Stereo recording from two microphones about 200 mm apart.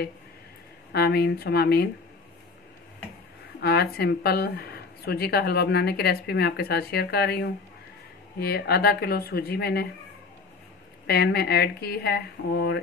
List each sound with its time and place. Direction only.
0.9 s speech: 50° left (ahead or behind)
3.6 s speech: 50° left (ahead or behind)
11.1 s speech: 50° left (ahead or behind)